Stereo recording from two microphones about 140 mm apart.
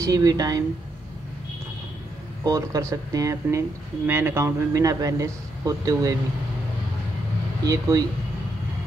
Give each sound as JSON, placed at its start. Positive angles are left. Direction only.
{"t": 0.0, "sound": "speech", "side_deg": -25}
{"t": 2.4, "sound": "speech", "side_deg": -25}
{"t": 7.6, "sound": "speech", "side_deg": -25}